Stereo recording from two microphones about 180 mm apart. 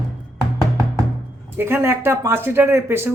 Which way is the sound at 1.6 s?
10° right (ahead or behind).